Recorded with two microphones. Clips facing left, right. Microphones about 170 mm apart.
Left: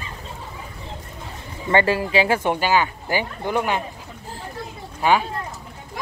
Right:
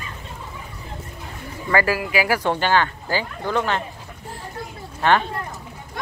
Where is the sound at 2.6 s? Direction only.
10° left (ahead or behind).